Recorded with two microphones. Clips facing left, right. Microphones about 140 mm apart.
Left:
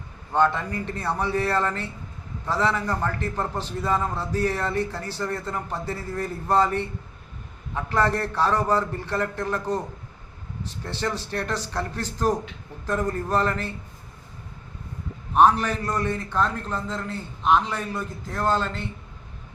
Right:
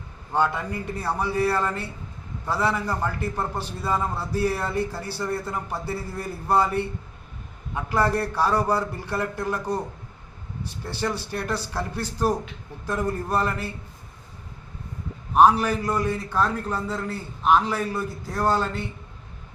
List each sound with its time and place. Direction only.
0.3 s a man's voice: 10° right (ahead or behind)
7.9 s a man's voice: 10° right (ahead or behind)
15.4 s a man's voice: 5° right (ahead or behind)